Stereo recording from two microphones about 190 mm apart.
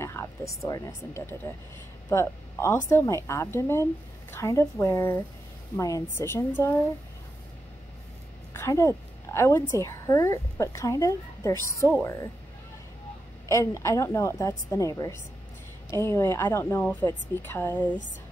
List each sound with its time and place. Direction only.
0.0 s a woman's voice: 15° left (ahead or behind)
8.5 s a woman's voice: 15° left (ahead or behind)
13.5 s a woman's voice: 15° left (ahead or behind)